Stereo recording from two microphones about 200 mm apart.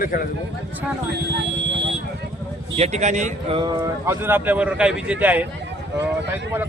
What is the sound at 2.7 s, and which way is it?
Speech, 35° right (ahead or behind).